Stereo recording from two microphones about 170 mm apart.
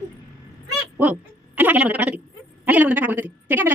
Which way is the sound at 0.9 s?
10° right (ahead or behind).